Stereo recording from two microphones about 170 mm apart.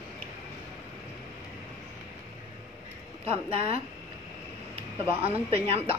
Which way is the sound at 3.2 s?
35° right (ahead or behind).